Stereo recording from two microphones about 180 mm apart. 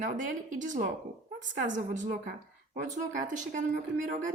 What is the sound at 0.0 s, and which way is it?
Speech, 45° right (ahead or behind).